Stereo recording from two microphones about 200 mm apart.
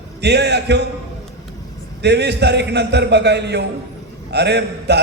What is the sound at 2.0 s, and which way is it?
Speech, 55° right (ahead or behind).